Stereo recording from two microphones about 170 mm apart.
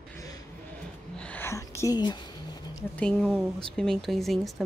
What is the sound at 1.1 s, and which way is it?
Whispering, 10° left (ahead or behind).